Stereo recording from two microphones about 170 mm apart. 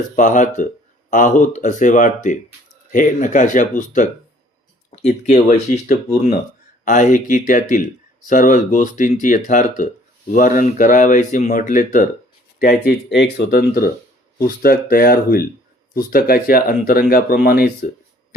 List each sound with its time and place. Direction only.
0.2 s speech: 45° left (ahead or behind)
12.5 s speech: 65° left (ahead or behind)